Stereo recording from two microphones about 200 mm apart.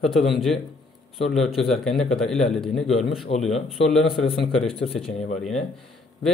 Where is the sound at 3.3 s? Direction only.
30° left (ahead or behind).